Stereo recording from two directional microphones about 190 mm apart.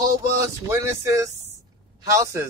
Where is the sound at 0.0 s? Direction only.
15° right (ahead or behind).